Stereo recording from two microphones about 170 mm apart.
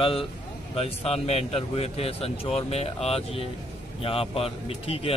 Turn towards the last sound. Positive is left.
turn(degrees=35)  # may be behind; listen again after turning